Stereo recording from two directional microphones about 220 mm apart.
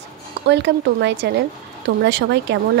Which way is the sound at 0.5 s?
50° right (ahead or behind).